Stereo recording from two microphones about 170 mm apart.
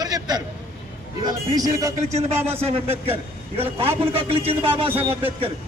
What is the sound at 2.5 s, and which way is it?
A man's voice, 35° right (ahead or behind).